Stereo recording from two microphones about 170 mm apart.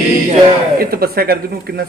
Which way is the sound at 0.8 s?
60° right (ahead or behind).